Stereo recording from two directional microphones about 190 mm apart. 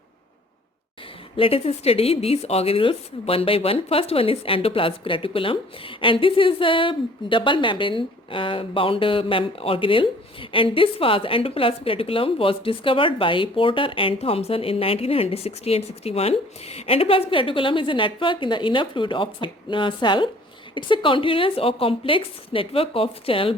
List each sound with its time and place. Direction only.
1.4 s a woman's voice: 30° left (ahead or behind)